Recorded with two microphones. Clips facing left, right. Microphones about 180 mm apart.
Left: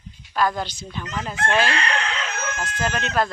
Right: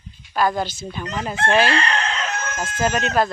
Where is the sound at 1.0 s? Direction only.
35° right (ahead or behind).